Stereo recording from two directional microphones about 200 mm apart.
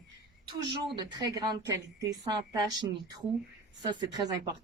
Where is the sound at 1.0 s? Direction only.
20° right (ahead or behind).